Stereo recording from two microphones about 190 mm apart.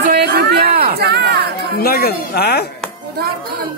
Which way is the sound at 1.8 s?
55° left (ahead or behind).